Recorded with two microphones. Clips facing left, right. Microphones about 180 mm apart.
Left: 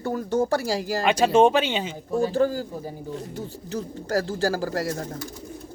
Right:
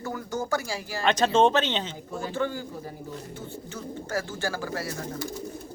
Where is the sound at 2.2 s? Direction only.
35° left (ahead or behind).